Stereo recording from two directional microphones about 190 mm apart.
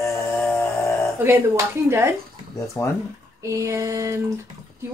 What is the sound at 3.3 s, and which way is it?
Speech, 15° right (ahead or behind).